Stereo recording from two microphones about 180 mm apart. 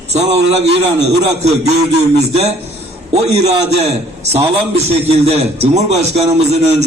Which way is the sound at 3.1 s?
35° right (ahead or behind).